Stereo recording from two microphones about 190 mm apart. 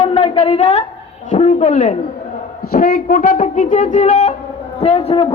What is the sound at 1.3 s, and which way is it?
A man's voice, 35° left (ahead or behind).